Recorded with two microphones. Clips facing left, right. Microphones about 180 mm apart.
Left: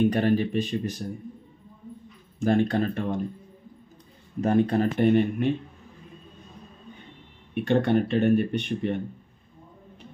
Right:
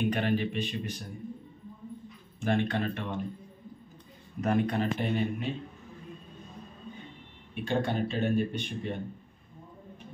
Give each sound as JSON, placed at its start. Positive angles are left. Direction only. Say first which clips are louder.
{"t": 0.1, "sound": "speech", "louder": "left 6 dB", "side_deg": 40}
{"t": 2.4, "sound": "speech", "louder": "left 6 dB", "side_deg": 40}
{"t": 4.4, "sound": "speech", "louder": "left 6 dB", "side_deg": 30}
{"t": 4.9, "sound": "speech", "louder": "left 9 dB", "side_deg": 55}
{"t": 7.5, "sound": "speech", "louder": "left 8 dB", "side_deg": 65}